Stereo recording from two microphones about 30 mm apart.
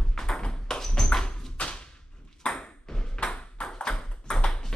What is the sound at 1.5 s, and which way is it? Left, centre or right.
Thump, left.